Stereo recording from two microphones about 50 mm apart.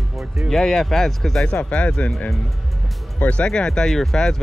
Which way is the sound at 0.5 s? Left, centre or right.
Centre.